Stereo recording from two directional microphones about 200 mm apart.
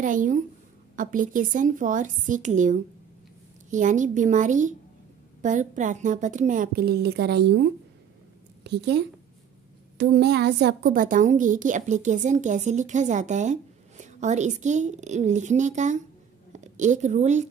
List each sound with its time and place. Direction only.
0.0 s a woman's voice: 40° right (ahead or behind)
8.6 s a woman's voice: 60° right (ahead or behind); by 17.5 s 35° right (ahead or behind)